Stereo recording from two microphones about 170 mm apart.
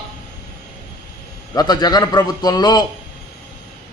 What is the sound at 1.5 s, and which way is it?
A man's voice, 25° left (ahead or behind).